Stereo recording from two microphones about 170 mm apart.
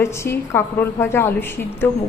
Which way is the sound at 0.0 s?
15° left (ahead or behind).